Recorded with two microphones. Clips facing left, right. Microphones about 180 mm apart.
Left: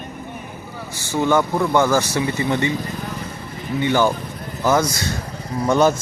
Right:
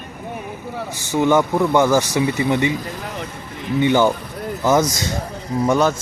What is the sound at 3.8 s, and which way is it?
Speech, 20° right (ahead or behind).